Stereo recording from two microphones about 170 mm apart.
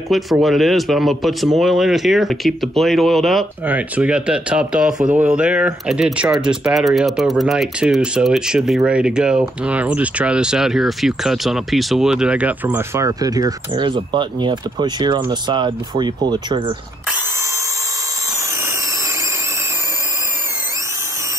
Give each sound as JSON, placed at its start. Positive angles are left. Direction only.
{"t": 0.1, "sound": "speech", "side_deg": 0}